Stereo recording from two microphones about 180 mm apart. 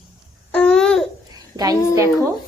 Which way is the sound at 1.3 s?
20° right (ahead or behind).